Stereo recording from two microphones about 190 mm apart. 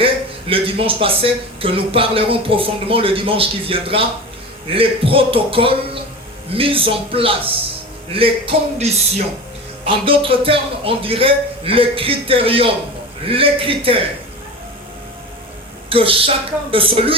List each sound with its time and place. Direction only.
0.0 s a man's voice: 30° right (ahead or behind)
15.9 s a man's voice: 30° right (ahead or behind)